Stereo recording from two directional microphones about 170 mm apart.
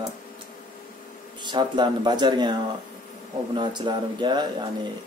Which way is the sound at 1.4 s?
25° right (ahead or behind).